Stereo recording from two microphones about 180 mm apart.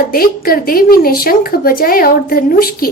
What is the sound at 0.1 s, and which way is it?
Speech, 55° left (ahead or behind).